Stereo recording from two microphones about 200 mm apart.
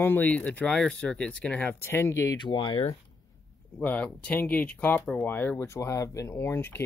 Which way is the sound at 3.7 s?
5° left (ahead or behind).